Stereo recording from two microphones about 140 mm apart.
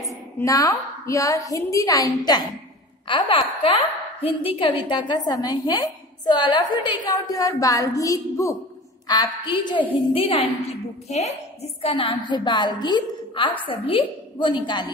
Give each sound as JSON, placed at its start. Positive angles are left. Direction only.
{"t": 0.4, "sound": "a woman's voice", "side_deg": 25}
{"t": 3.1, "sound": "a woman's voice", "side_deg": 35}
{"t": 11.9, "sound": "a woman's voice", "side_deg": 35}